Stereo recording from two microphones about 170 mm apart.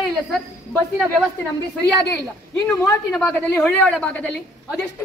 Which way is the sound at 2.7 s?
10° left (ahead or behind).